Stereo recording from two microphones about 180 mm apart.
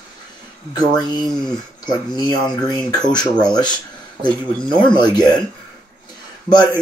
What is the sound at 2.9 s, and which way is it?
Speech, 25° left (ahead or behind).